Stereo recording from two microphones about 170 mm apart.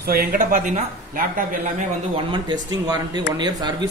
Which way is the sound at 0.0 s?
60° right (ahead or behind).